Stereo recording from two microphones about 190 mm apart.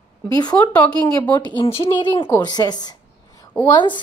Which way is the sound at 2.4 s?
20° left (ahead or behind).